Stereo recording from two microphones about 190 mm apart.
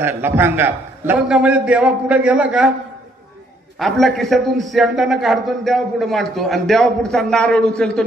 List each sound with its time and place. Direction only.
0.0 s a man's voice: 10° right (ahead or behind)
3.8 s a man's voice: centre (ahead or behind)